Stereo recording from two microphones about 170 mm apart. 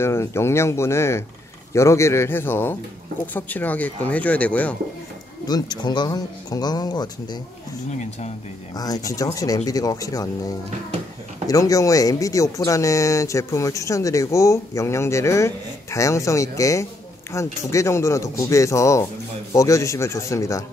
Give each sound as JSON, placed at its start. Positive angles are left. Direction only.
{"t": 0.0, "sound": "speech", "side_deg": 15}
{"t": 5.5, "sound": "speech", "side_deg": 25}
{"t": 8.7, "sound": "speech", "side_deg": 20}
{"t": 11.4, "sound": "speech", "side_deg": 20}